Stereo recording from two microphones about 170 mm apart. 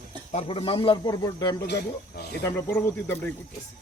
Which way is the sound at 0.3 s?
30° left (ahead or behind).